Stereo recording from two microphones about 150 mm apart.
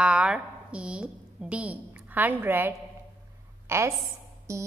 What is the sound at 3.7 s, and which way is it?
Speech, 15° right (ahead or behind).